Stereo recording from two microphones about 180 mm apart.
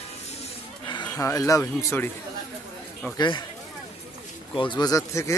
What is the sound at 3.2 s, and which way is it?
Speech, 25° left (ahead or behind).